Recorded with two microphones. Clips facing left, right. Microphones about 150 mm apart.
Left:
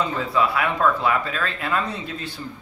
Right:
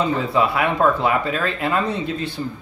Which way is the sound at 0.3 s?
25° right (ahead or behind).